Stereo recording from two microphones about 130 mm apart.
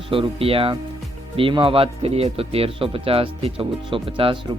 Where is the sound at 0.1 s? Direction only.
45° right (ahead or behind).